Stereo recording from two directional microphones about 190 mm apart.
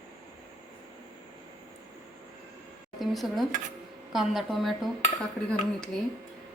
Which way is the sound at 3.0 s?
Centre (ahead or behind).